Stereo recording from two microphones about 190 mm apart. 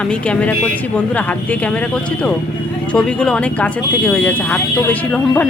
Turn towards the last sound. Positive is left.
turn(degrees=10)  # may be behind; listen again after turning